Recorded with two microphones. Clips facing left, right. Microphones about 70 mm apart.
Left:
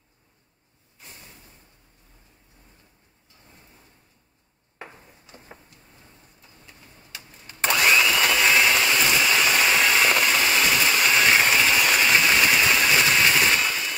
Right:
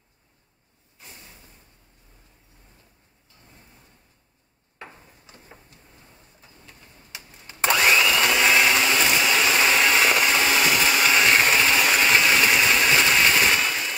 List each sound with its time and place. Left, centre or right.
7.8 s vacuum cleaner: centre
10.9 s engine: centre